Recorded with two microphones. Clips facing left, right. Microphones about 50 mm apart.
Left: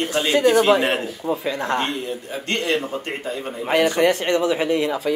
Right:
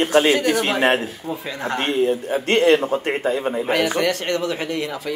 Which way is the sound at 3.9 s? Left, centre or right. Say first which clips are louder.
Left 3 dB; left.